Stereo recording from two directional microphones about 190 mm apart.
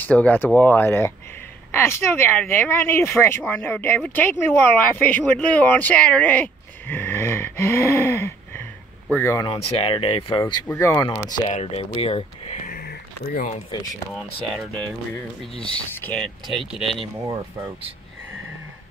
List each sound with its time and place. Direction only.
0.0 s speech: 10° left (ahead or behind)
9.5 s speech: 30° left (ahead or behind)
10.4 s speech: 10° left (ahead or behind)
11.1 s speech: 25° left (ahead or behind); by 13.5 s 50° left (ahead or behind)
13.5 s speech: 25° left (ahead or behind)
14.1 s speech: centre (ahead or behind)